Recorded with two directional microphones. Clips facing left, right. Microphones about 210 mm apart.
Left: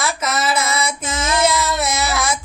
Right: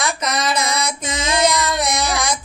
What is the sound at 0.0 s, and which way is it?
Female singing, 5° left (ahead or behind).